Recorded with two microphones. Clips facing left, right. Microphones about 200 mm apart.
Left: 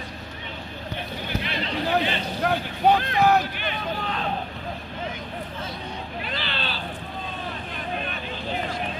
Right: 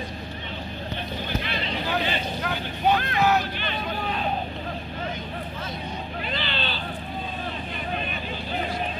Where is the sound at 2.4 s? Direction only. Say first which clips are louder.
Left 4 dB; 35° left (ahead or behind).